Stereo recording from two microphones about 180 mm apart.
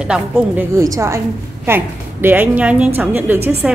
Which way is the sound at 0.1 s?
15° right (ahead or behind).